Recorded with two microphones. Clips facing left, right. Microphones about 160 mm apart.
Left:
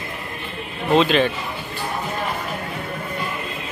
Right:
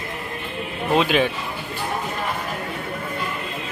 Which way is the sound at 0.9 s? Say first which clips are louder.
Left 2 dB; 10° right (ahead or behind).